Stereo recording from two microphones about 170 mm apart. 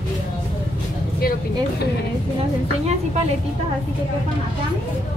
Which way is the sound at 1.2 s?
60° left (ahead or behind).